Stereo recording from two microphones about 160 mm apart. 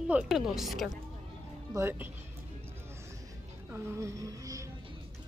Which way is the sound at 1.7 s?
15° right (ahead or behind).